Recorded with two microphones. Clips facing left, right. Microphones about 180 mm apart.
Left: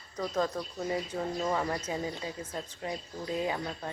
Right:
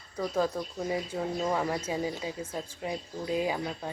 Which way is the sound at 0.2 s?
10° right (ahead or behind).